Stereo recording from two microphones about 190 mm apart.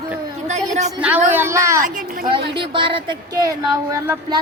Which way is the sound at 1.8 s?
45° right (ahead or behind).